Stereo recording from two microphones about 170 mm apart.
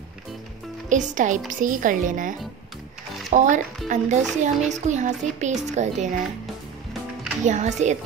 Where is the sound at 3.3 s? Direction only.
45° right (ahead or behind).